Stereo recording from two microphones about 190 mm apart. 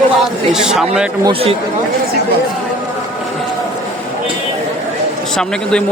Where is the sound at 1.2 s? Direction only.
30° right (ahead or behind).